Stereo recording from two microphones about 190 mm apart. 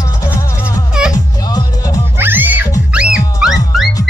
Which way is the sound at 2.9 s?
5° right (ahead or behind).